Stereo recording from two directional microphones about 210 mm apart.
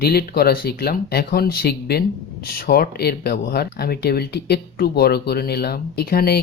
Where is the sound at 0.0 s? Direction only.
45° left (ahead or behind).